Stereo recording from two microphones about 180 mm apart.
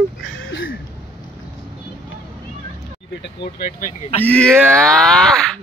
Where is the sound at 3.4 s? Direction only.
55° left (ahead or behind).